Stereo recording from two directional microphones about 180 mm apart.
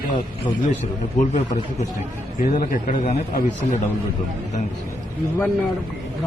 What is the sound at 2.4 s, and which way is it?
A man's voice, 50° left (ahead or behind).